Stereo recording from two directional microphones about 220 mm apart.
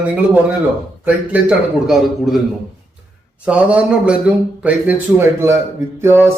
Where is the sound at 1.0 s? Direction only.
5° right (ahead or behind).